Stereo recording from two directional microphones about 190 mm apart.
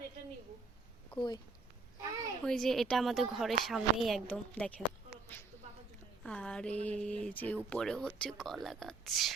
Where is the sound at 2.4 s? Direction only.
5° left (ahead or behind).